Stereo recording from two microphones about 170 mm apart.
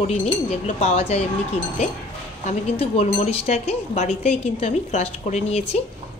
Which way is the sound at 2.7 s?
35° left (ahead or behind).